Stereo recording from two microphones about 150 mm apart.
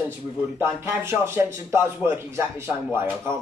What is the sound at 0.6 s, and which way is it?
Speech, 15° right (ahead or behind).